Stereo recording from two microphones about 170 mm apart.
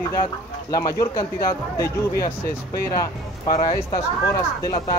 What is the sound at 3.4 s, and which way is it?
Speech, 25° left (ahead or behind).